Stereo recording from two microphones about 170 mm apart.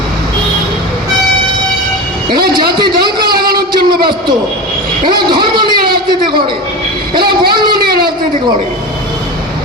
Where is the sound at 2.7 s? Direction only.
25° right (ahead or behind).